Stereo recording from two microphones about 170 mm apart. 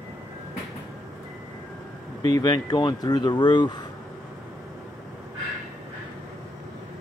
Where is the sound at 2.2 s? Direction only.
25° left (ahead or behind).